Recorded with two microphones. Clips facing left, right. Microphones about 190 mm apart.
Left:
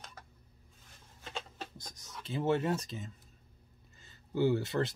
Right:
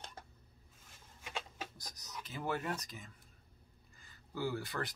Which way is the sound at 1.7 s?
25° left (ahead or behind).